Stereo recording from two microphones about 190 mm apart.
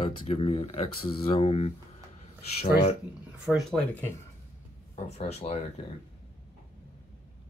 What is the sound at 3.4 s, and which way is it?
Speech, centre (ahead or behind).